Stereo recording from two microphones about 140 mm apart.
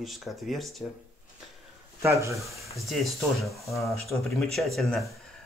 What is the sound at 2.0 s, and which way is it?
Speech, 20° right (ahead or behind).